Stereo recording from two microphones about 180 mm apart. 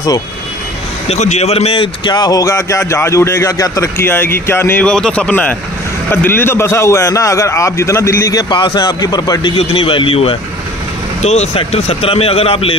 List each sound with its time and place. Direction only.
1.0 s speech: 35° left (ahead or behind); by 9.5 s 20° left (ahead or behind)
9.6 s speech: 30° left (ahead or behind)